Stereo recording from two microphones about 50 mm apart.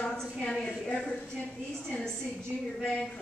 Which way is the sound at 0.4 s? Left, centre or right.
Centre.